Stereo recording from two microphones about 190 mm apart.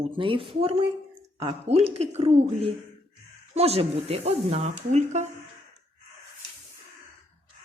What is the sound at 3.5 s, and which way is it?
Speech, 30° right (ahead or behind).